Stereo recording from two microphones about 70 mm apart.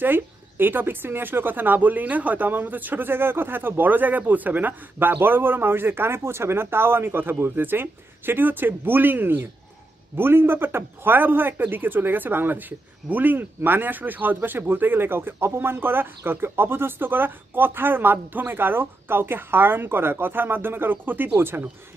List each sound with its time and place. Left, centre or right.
0.0 s a man's voice: right